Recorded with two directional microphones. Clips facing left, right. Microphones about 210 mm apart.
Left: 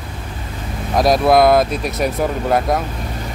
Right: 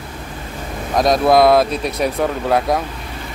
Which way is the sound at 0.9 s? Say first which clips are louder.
Even; centre (ahead or behind).